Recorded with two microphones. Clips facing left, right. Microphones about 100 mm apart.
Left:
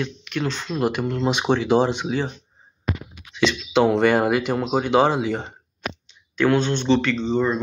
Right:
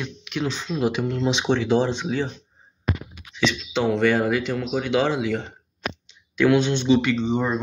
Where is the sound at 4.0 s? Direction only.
60° left (ahead or behind).